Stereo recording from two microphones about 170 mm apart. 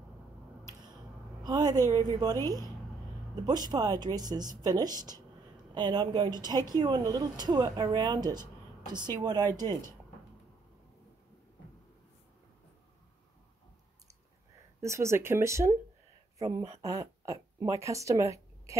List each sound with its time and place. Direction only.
1.4 s a woman's voice: 25° right (ahead or behind)
3.4 s a woman's voice: 25° right (ahead or behind)
14.8 s speech: 15° right (ahead or behind)
16.8 s a sound: 20° right (ahead or behind)
17.7 s a woman's voice: 20° right (ahead or behind)